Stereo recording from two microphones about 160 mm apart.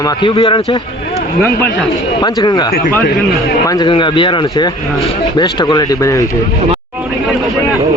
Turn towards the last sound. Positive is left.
turn(degrees=20)  # may be behind; listen again after turning